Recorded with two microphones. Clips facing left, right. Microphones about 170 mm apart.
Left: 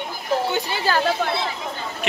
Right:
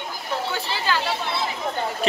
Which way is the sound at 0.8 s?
50° left (ahead or behind).